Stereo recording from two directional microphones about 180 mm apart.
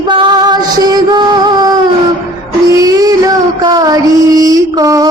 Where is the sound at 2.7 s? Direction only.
20° right (ahead or behind).